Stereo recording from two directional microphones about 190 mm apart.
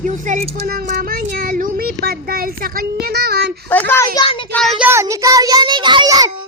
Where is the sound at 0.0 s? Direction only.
40° right (ahead or behind); by 3.5 s 55° right (ahead or behind).